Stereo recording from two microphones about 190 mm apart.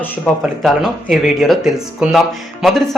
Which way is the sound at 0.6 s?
Centre (ahead or behind).